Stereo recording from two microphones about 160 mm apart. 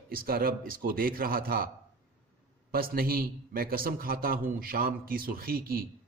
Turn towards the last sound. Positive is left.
turn(degrees=-65)  # may be behind; listen again after turning